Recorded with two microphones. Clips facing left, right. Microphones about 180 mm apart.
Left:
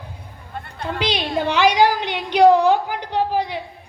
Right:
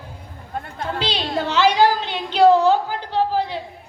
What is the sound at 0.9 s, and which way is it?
A woman's voice, 15° left (ahead or behind).